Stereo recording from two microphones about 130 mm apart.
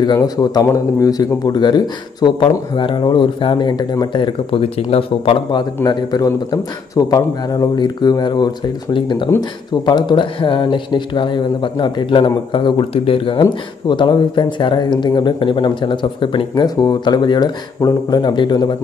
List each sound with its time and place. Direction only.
0.0 s speech: 30° left (ahead or behind)